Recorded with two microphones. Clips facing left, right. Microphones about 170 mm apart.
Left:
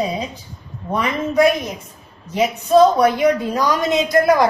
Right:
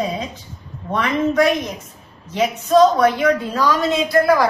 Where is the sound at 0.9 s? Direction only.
10° left (ahead or behind).